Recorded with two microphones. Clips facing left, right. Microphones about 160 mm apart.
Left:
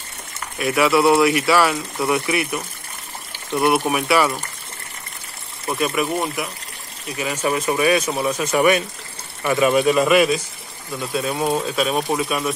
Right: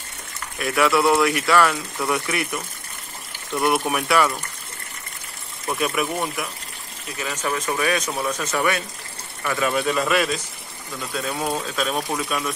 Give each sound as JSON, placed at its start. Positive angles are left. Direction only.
{"t": 0.6, "sound": "speech", "side_deg": 5}
{"t": 5.7, "sound": "speech", "side_deg": 5}
{"t": 7.2, "sound": "speech", "side_deg": 10}